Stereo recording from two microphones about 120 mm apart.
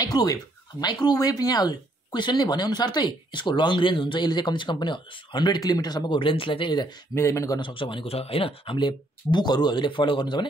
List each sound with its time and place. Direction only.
0.0 s speech: 35° left (ahead or behind)
7.2 s speech: 25° left (ahead or behind)
7.6 s speech: 45° left (ahead or behind)